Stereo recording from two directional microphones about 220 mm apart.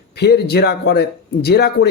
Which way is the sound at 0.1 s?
50° left (ahead or behind).